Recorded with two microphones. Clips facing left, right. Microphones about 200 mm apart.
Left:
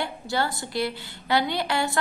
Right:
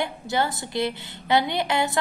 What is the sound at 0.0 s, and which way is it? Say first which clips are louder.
A woman's voice: right 2 dB; 20° right (ahead or behind).